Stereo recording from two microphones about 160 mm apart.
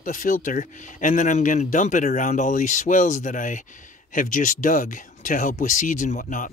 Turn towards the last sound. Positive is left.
turn(degrees=55)  # may be behind; listen again after turning